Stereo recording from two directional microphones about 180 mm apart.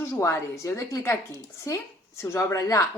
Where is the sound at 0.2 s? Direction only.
15° left (ahead or behind).